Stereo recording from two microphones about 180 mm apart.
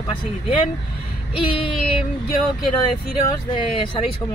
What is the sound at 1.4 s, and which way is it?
Speech, 30° left (ahead or behind).